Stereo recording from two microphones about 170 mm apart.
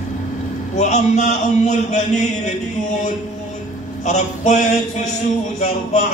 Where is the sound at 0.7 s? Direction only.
40° left (ahead or behind).